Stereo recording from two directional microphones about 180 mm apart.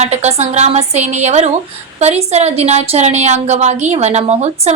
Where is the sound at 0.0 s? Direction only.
35° right (ahead or behind).